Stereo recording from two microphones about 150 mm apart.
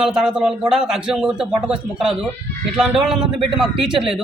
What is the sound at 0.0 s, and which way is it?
A woman's voice, 5° right (ahead or behind).